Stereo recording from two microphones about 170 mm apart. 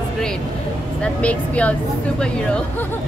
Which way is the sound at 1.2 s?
10° left (ahead or behind).